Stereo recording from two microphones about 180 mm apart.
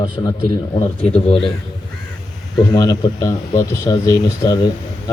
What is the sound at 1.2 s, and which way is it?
Speech, 35° left (ahead or behind).